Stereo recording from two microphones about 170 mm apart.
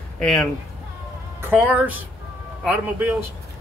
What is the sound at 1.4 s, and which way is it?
Speech, 10° right (ahead or behind).